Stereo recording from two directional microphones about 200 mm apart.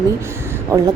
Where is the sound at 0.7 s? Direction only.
15° right (ahead or behind).